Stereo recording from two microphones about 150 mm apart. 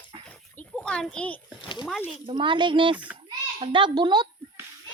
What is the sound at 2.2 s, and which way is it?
Speech, 35° right (ahead or behind).